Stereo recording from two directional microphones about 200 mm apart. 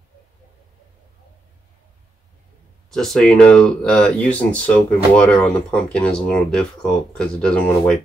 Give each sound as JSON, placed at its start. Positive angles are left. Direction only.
{"t": 2.9, "sound": "speech", "side_deg": 0}